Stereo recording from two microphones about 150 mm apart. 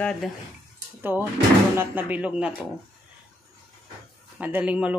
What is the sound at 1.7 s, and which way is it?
Speech, 10° right (ahead or behind).